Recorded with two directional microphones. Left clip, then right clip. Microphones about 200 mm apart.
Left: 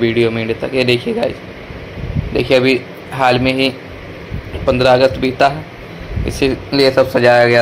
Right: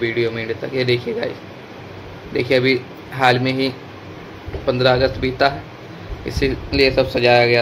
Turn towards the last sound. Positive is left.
turn(degrees=10)  # may be behind; listen again after turning